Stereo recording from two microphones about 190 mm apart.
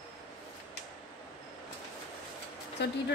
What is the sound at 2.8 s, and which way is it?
Speech, 65° left (ahead or behind).